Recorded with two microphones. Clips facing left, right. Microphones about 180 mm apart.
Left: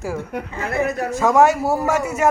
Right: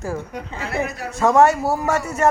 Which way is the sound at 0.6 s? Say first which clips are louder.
Left 4 dB; 50° left (ahead or behind).